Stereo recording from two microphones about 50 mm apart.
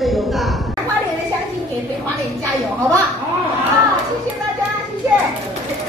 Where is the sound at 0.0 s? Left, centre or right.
Centre.